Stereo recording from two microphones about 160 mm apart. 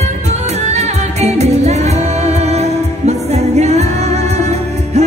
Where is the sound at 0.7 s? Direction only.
45° right (ahead or behind).